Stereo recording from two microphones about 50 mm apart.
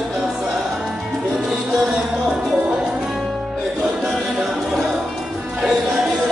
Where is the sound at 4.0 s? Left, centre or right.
Centre.